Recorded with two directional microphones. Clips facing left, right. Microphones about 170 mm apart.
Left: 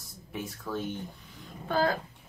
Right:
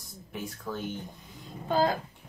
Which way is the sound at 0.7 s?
15° right (ahead or behind).